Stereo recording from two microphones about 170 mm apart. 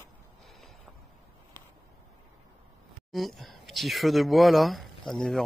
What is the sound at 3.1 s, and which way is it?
Speech, centre (ahead or behind).